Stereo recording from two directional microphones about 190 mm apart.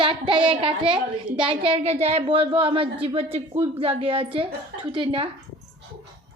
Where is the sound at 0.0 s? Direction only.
25° right (ahead or behind).